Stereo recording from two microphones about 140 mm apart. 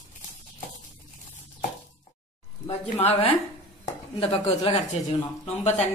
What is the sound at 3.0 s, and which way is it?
Speech, 45° left (ahead or behind).